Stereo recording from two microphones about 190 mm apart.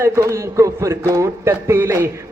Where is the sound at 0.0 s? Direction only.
15° right (ahead or behind).